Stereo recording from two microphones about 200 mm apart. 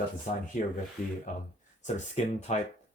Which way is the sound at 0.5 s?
40° left (ahead or behind).